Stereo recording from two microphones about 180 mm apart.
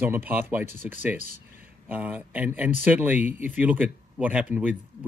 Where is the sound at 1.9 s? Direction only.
10° right (ahead or behind).